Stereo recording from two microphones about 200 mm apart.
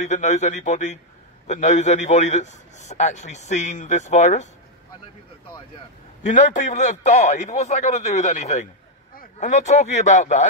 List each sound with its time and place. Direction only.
0.0 s a man's voice: 35° left (ahead or behind)
6.2 s a man's voice: 40° left (ahead or behind)